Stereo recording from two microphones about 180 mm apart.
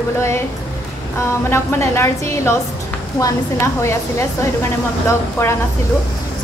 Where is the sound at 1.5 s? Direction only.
15° left (ahead or behind).